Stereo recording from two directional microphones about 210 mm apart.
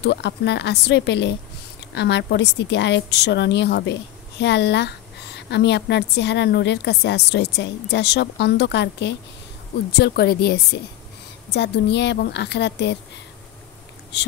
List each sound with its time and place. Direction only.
0.0 s a woman's voice: 55° left (ahead or behind)
14.1 s a woman's voice: 55° left (ahead or behind)